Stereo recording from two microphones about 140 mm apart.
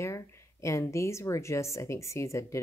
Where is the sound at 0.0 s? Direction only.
20° left (ahead or behind).